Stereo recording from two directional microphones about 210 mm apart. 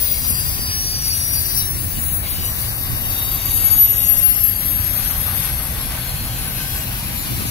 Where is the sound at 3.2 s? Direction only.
25° left (ahead or behind).